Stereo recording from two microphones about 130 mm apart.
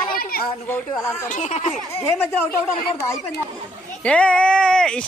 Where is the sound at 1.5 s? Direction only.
65° left (ahead or behind).